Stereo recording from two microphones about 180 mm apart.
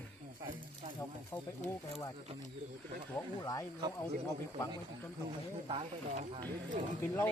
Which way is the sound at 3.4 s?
20° left (ahead or behind).